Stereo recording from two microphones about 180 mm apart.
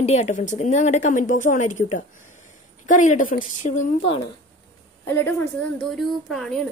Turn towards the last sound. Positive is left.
turn(degrees=0)  # may be behind; listen again after turning